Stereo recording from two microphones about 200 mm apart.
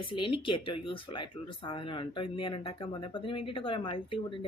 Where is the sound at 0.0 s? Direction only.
25° left (ahead or behind).